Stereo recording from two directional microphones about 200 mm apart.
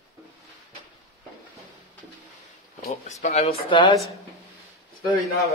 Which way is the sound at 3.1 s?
35° left (ahead or behind).